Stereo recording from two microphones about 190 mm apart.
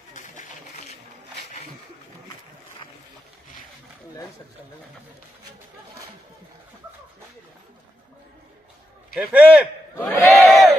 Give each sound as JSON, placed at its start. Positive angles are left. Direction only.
{"t": 0.1, "sound": "a sound", "side_deg": 40}
{"t": 9.1, "sound": "a man's voice", "side_deg": -5}
{"t": 9.9, "sound": "battle cry", "side_deg": 10}
{"t": 10.3, "sound": "crowd", "side_deg": 0}